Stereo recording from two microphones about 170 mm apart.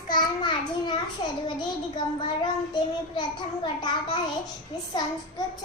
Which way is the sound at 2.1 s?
25° left (ahead or behind).